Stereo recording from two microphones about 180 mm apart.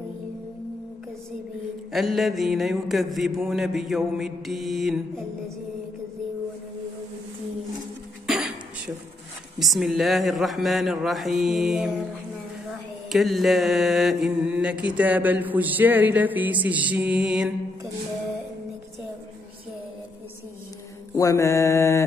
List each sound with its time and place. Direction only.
1.9 s mantra: centre (ahead or behind)
8.3 s a sound: centre (ahead or behind)
9.6 s mantra: centre (ahead or behind)
13.1 s mantra: centre (ahead or behind)
21.1 s mantra: 15° left (ahead or behind)